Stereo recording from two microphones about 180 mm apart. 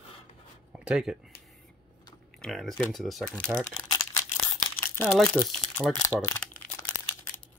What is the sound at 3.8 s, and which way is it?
Crumpling, 15° left (ahead or behind).